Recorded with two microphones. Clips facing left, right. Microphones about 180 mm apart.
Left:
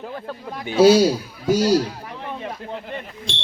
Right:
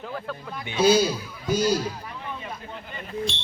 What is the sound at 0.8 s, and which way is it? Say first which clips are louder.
Speech: left 6 dB; 75° left (ahead or behind).